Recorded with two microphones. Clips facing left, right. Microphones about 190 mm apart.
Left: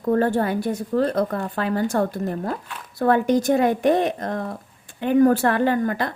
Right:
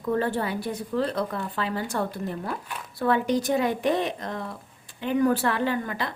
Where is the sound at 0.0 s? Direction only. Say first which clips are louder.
Left 6 dB; 45° left (ahead or behind).